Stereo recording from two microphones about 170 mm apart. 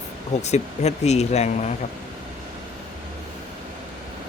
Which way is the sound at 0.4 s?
40° left (ahead or behind).